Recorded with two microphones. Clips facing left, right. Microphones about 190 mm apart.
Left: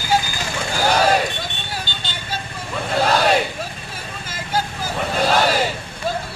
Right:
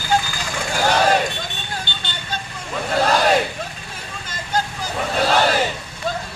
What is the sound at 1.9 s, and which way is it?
Vehicle, 65° right (ahead or behind).